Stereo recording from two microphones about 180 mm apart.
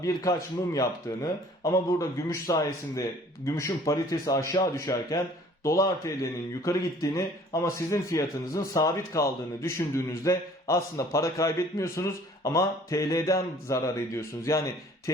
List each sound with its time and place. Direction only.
0.0 s a man's voice: 20° left (ahead or behind)